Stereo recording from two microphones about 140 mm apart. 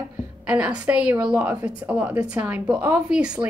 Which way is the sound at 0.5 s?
10° right (ahead or behind).